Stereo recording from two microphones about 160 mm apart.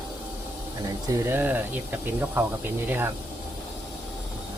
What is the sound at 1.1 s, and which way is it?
Speech, 15° right (ahead or behind).